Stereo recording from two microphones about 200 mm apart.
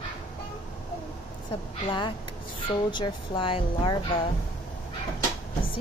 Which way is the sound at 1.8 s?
25° left (ahead or behind).